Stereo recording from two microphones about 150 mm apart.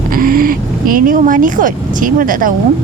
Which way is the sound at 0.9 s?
65° right (ahead or behind).